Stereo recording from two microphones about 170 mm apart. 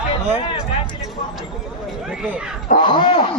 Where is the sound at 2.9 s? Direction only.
25° left (ahead or behind).